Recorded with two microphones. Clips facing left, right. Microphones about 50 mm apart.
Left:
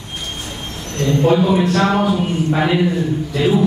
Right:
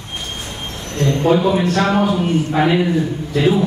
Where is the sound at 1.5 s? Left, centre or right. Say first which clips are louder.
Left 1 dB; right.